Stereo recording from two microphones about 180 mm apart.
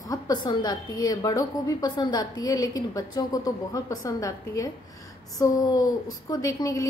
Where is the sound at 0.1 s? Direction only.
25° left (ahead or behind).